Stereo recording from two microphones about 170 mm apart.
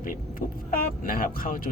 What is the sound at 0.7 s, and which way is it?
Speech, 55° left (ahead or behind).